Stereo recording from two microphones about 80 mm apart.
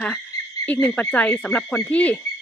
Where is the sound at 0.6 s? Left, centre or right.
Left.